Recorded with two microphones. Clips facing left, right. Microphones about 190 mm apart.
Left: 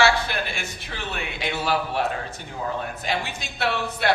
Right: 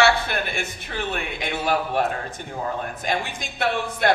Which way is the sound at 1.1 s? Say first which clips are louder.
Left 3 dB; 50° right (ahead or behind).